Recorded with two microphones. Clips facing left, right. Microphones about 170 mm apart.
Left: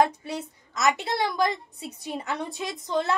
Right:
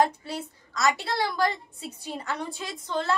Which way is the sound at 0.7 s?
20° left (ahead or behind).